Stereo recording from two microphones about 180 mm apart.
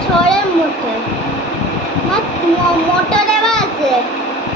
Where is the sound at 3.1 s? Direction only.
5° left (ahead or behind).